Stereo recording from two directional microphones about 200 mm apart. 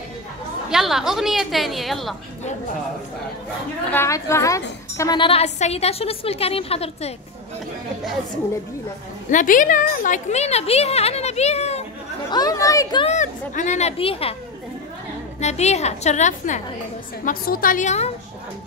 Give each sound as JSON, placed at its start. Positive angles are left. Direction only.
{"t": 0.7, "sound": "a woman's voice", "side_deg": 0}
{"t": 3.9, "sound": "a woman's voice", "side_deg": 15}
{"t": 9.3, "sound": "a woman's voice", "side_deg": 40}
{"t": 12.3, "sound": "a woman's voice", "side_deg": 20}
{"t": 13.0, "sound": "a woman's voice", "side_deg": 35}
{"t": 15.4, "sound": "a woman's voice", "side_deg": 35}